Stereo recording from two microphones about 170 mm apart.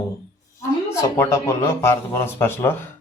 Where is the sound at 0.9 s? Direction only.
15° left (ahead or behind).